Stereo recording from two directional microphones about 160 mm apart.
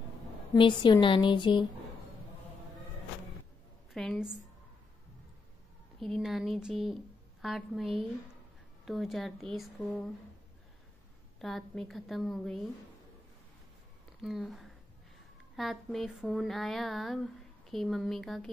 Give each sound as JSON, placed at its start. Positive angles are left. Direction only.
{"t": 0.6, "sound": "a woman's voice", "side_deg": 30}
{"t": 3.9, "sound": "speech", "side_deg": 0}
{"t": 5.9, "sound": "speech", "side_deg": 0}
{"t": 11.3, "sound": "speech", "side_deg": 0}
{"t": 14.2, "sound": "speech", "side_deg": 0}